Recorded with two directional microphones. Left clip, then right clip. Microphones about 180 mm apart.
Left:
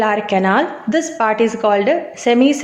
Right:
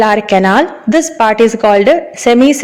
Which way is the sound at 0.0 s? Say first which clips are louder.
Right 6 dB; 45° right (ahead or behind).